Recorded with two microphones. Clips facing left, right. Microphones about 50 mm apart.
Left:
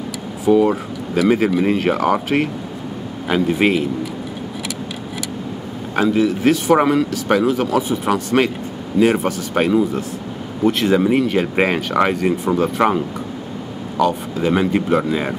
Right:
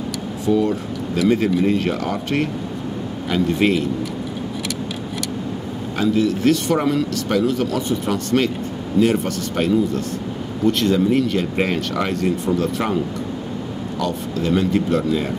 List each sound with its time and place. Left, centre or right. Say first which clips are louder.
0.6 s speech: left 4 dB; centre
5.9 s speech: left 2 dB; centre
13.9 s speech: left 6 dB; centre